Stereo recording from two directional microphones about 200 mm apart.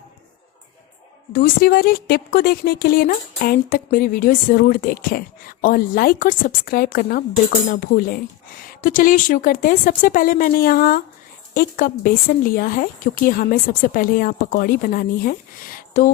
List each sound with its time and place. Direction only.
1.3 s speech: 45° left (ahead or behind)